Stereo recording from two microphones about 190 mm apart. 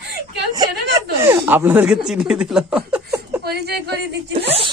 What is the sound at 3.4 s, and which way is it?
Speech, 55° right (ahead or behind).